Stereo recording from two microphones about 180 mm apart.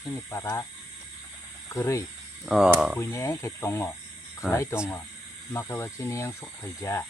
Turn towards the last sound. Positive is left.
turn(degrees=15)  # may be behind; listen again after turning